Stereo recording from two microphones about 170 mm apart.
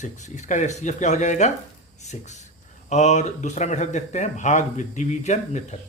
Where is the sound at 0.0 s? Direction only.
45° left (ahead or behind).